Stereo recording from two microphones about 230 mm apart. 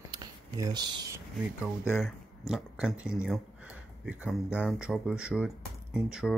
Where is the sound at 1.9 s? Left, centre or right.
Centre.